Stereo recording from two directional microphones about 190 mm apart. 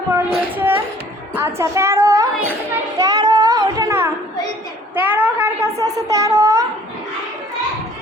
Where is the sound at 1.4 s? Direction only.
15° right (ahead or behind).